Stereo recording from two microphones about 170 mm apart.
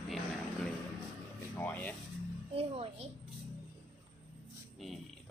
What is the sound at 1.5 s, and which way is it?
Speech, 10° left (ahead or behind).